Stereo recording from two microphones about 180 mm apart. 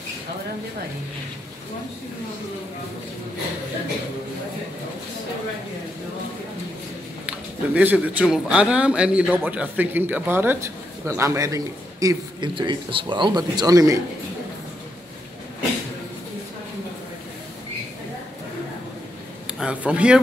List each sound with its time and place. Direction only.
7.2 s a man's voice: 10° right (ahead or behind)
19.4 s a man's voice: 5° right (ahead or behind)